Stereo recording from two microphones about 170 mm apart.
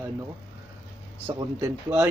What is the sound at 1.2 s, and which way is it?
Speech, 15° right (ahead or behind).